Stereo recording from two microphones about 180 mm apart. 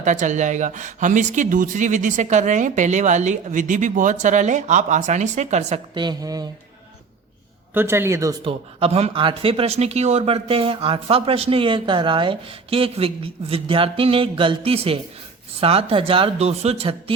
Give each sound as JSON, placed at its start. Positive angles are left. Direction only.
{"t": 0.0, "sound": "speech", "side_deg": -45}
{"t": 5.9, "sound": "a woman's voice", "side_deg": -25}
{"t": 7.7, "sound": "speech", "side_deg": -10}
{"t": 8.4, "sound": "speech", "side_deg": -35}